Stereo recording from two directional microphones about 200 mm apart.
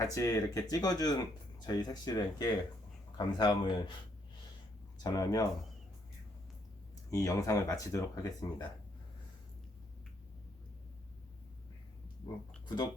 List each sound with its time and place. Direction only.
0.0 s speech: 15° left (ahead or behind)
5.0 s speech: 20° left (ahead or behind)
7.1 s speech: 15° left (ahead or behind)
12.6 s speech: 20° left (ahead or behind)